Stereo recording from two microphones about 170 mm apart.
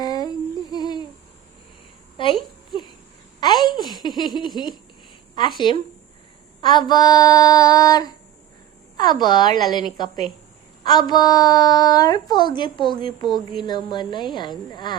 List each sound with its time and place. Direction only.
0.0 s humming: 25° left (ahead or behind)
3.4 s a sound: 25° left (ahead or behind)
4.4 s a woman's voice: 25° left (ahead or behind)